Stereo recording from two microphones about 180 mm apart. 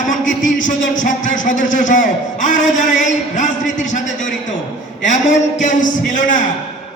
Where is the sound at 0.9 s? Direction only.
45° left (ahead or behind).